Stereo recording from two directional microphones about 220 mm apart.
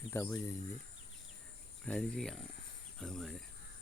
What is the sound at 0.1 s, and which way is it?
Speech, 10° left (ahead or behind).